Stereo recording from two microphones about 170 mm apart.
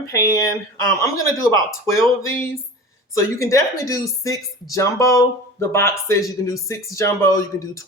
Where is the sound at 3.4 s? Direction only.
20° left (ahead or behind).